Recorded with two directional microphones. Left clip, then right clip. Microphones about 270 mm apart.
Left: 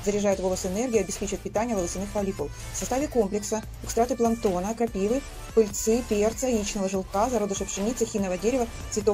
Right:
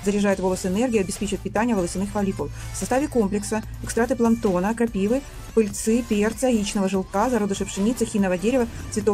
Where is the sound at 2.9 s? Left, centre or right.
Centre.